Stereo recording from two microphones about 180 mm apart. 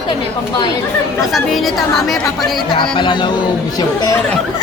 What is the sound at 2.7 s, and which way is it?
Speech, 25° left (ahead or behind).